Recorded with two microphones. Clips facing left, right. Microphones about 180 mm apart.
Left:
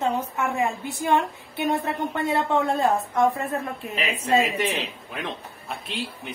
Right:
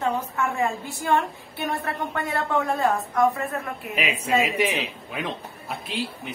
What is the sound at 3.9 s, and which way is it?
A man's voice, 10° right (ahead or behind).